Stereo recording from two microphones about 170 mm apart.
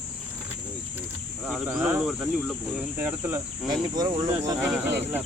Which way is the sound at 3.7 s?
25° right (ahead or behind).